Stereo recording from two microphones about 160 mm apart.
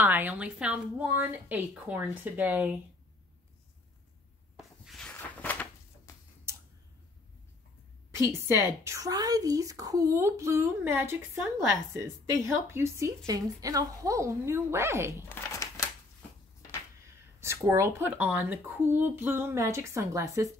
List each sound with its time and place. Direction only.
0.0 s a woman's voice: 10° right (ahead or behind)
4.6 s a sound: centre (ahead or behind)
6.1 s tick-tock: 20° left (ahead or behind)
6.5 s tick: 15° right (ahead or behind)
8.1 s a woman's voice: 15° right (ahead or behind)
15.2 s crumpling: 15° left (ahead or behind)
17.4 s a woman's voice: 15° right (ahead or behind)